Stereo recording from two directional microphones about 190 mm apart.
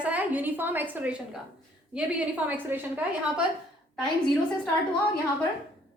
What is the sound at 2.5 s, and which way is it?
Speech, 10° right (ahead or behind).